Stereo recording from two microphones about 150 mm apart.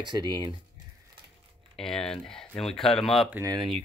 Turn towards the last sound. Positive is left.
turn(degrees=-20)  # may be behind; listen again after turning